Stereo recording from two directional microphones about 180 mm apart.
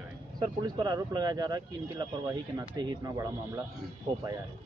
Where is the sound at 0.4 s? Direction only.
25° right (ahead or behind).